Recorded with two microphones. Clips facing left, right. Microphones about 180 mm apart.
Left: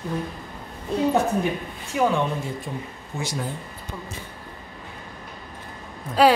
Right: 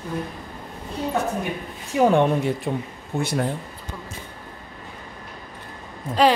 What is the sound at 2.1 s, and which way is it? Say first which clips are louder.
Speech: right 6 dB; 65° right (ahead or behind).